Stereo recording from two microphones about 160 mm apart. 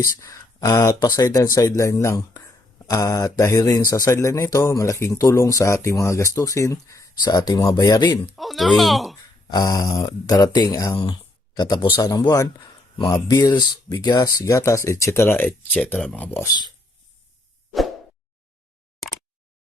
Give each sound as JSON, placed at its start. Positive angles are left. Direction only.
{"t": 0.2, "sound": "speech", "side_deg": 20}
{"t": 8.4, "sound": "speech", "side_deg": 0}
{"t": 9.5, "sound": "speech", "side_deg": 25}